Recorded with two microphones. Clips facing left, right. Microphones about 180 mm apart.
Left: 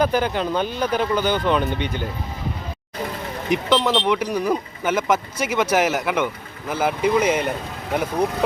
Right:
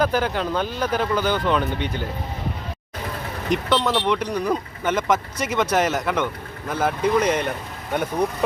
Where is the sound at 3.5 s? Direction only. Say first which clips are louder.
Left 2 dB; 5° left (ahead or behind).